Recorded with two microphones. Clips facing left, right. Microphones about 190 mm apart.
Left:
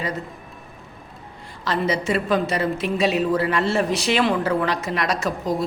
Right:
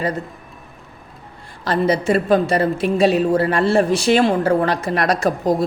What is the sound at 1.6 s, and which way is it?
A woman's voice, 55° right (ahead or behind).